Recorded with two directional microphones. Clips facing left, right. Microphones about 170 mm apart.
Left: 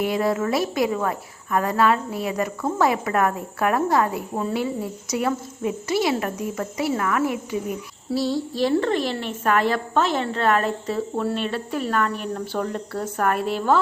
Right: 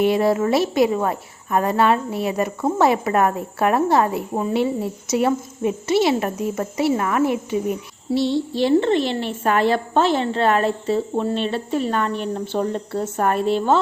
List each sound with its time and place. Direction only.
0.0 s speech: 25° right (ahead or behind)
8.1 s a sound: centre (ahead or behind)
8.6 s speech: 25° right (ahead or behind)